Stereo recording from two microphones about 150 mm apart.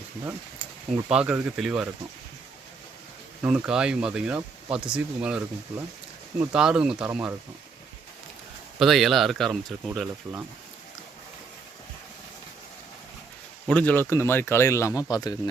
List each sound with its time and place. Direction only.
1.0 s speech: 5° right (ahead or behind)
3.4 s speech: 5° right (ahead or behind)
6.4 s speech: 5° right (ahead or behind)
8.8 s speech: centre (ahead or behind)
13.7 s a man's voice: 10° left (ahead or behind); by 15.4 s 25° left (ahead or behind)